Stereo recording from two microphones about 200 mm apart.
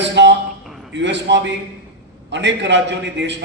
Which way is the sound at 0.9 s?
60° right (ahead or behind).